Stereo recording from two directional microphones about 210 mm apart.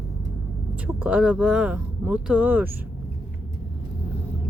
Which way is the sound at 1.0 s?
5° right (ahead or behind).